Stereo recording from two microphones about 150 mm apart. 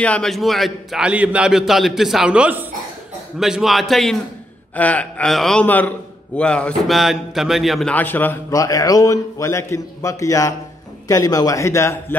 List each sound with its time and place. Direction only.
0.0 s a man's voice: 5° left (ahead or behind)
7.9 s a man's voice: 10° left (ahead or behind)